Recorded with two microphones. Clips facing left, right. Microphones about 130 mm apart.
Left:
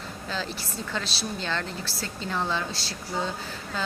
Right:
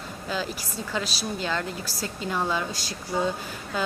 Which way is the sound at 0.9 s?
10° right (ahead or behind).